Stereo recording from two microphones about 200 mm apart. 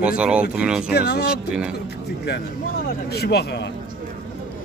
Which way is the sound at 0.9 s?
50° left (ahead or behind).